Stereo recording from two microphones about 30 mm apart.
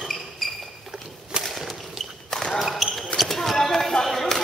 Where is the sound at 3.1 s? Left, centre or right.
Centre.